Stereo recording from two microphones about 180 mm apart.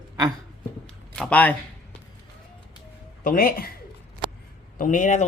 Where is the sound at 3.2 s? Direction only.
55° left (ahead or behind).